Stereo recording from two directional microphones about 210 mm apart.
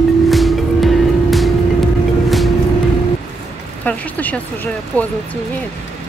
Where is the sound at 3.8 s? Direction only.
5° left (ahead or behind).